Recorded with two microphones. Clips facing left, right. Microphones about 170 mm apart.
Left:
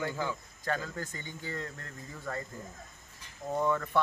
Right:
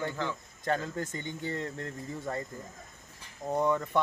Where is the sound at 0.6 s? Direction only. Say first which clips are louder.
Right 3 dB; 25° right (ahead or behind).